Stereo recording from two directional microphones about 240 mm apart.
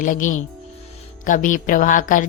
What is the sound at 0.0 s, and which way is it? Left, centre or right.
Speech, left.